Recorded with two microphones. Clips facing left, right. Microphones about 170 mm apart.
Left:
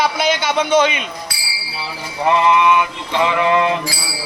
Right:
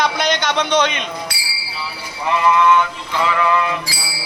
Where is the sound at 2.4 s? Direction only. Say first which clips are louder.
Right 3 dB; 20° left (ahead or behind).